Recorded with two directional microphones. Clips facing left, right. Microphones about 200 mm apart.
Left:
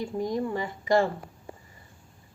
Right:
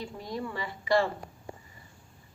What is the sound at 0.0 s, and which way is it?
Speech, 45° left (ahead or behind).